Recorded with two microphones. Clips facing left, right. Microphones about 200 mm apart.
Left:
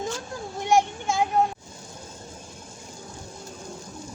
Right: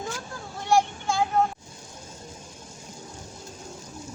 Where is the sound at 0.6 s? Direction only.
20° left (ahead or behind).